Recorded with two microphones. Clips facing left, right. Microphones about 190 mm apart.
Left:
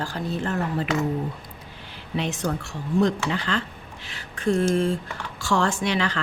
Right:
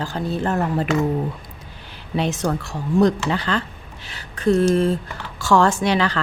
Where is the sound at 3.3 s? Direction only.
35° right (ahead or behind).